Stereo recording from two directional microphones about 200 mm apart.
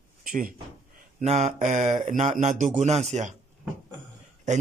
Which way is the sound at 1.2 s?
35° right (ahead or behind).